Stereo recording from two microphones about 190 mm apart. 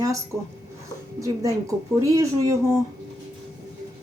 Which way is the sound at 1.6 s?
15° right (ahead or behind).